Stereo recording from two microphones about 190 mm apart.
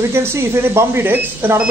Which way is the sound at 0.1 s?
15° right (ahead or behind).